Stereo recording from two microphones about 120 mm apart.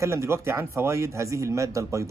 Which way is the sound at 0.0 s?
25° right (ahead or behind).